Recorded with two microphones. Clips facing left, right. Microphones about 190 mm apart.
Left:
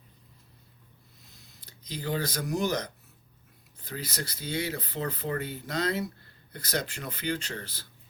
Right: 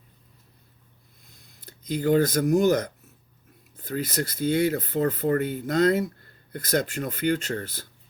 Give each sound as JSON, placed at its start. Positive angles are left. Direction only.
{"t": 1.4, "sound": "speech", "side_deg": -50}